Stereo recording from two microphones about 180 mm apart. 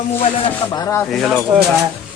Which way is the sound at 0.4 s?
20° left (ahead or behind).